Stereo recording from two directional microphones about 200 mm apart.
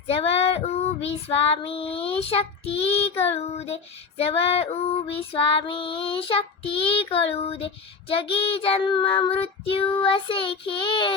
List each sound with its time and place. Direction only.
0.1 s female singing: 30° left (ahead or behind)